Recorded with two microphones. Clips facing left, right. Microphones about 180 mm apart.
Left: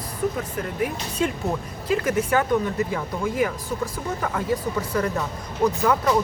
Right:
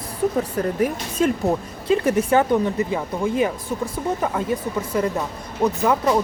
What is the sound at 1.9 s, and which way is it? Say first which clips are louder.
Speech: right 4 dB; 25° right (ahead or behind).